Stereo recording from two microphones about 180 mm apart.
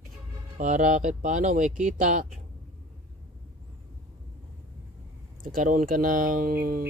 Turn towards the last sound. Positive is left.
turn(degrees=-60)  # may be behind; listen again after turning